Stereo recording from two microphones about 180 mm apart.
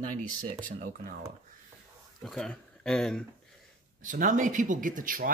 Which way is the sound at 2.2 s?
5° left (ahead or behind).